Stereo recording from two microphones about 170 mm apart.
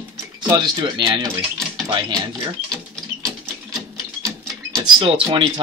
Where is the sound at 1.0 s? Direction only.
25° right (ahead or behind).